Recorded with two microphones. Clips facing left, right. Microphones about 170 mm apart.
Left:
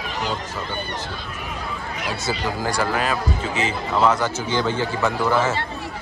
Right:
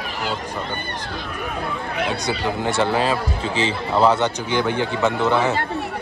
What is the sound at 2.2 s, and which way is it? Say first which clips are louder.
Speech: right 2 dB; 20° right (ahead or behind).